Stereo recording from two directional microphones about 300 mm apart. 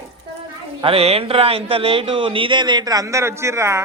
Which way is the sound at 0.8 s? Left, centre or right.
Centre.